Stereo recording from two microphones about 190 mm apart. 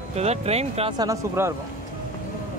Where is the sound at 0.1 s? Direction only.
35° right (ahead or behind).